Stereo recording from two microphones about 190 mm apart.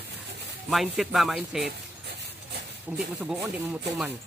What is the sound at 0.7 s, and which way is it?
A man's voice, centre (ahead or behind).